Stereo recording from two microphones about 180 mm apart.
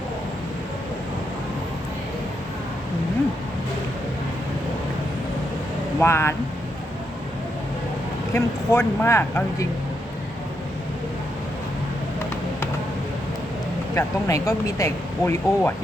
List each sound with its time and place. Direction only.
6.0 s speech: 15° left (ahead or behind)
8.3 s speech: 15° left (ahead or behind)
13.9 s speech: 20° left (ahead or behind)